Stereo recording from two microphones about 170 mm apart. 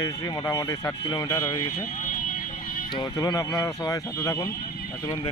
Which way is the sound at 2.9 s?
25° left (ahead or behind).